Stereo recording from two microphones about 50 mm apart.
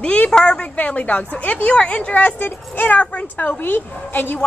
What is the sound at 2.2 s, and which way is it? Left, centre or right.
A woman's voice, left.